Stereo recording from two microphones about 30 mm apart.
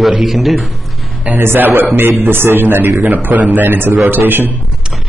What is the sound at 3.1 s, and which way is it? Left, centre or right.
A man's voice, right.